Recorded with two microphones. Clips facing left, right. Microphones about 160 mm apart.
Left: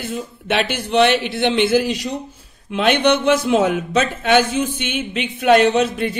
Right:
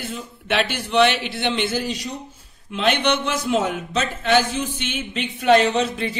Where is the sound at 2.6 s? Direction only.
55° left (ahead or behind).